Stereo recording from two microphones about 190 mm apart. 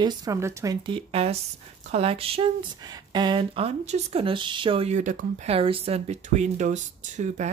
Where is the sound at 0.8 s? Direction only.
30° right (ahead or behind).